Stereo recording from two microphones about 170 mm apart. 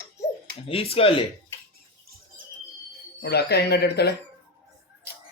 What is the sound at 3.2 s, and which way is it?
Speech, 75° left (ahead or behind).